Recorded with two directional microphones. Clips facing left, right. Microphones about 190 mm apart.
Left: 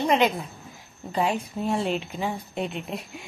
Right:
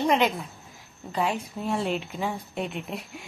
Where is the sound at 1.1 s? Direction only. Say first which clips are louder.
Left 2 dB; 20° left (ahead or behind).